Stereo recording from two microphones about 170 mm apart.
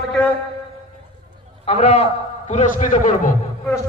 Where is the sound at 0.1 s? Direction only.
5° left (ahead or behind).